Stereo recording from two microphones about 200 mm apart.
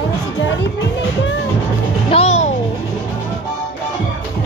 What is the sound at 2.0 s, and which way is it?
Music, 30° left (ahead or behind).